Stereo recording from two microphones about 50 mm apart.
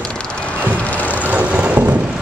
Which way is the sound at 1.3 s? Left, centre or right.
Right.